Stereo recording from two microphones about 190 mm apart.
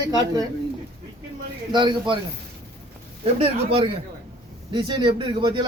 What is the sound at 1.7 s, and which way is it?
Speech, 25° right (ahead or behind).